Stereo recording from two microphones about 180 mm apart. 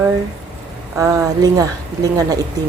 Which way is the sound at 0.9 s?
20° right (ahead or behind).